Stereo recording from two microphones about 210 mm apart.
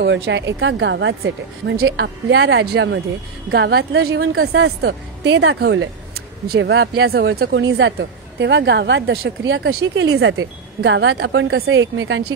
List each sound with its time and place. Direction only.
0.0 s a woman's voice: 55° right (ahead or behind)